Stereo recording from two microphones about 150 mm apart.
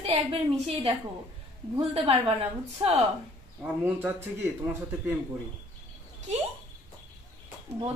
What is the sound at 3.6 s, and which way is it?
Speech, 15° right (ahead or behind).